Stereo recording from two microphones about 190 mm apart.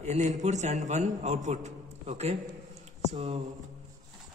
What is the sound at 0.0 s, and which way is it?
A man's voice, 35° right (ahead or behind).